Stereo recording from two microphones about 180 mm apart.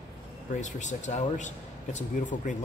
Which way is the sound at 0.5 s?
45° left (ahead or behind).